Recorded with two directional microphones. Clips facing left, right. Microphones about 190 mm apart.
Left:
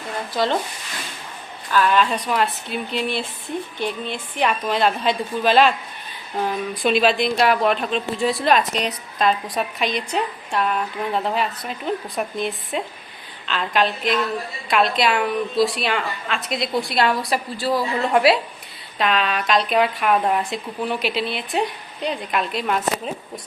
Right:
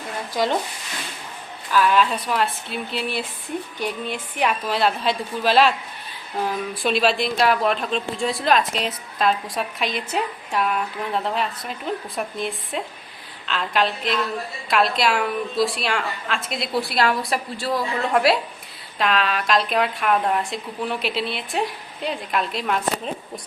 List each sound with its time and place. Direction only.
1.7 s speech: 5° right (ahead or behind)
6.8 s speech: centre (ahead or behind)